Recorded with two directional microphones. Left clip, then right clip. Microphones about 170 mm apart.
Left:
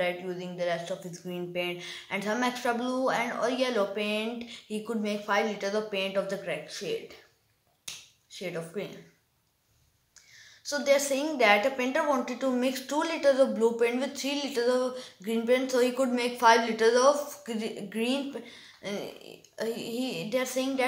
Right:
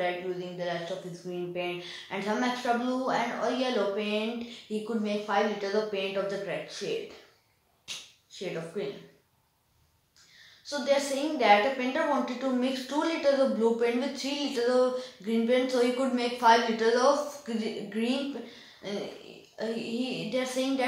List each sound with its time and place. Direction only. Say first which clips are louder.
0.6 s a woman's voice: left 6 dB; 20° left (ahead or behind)
8.3 s speech: even; 15° left (ahead or behind)
10.7 s a woman's voice: left 2 dB; 25° left (ahead or behind)